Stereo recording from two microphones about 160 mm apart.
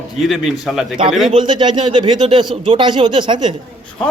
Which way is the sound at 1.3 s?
30° right (ahead or behind).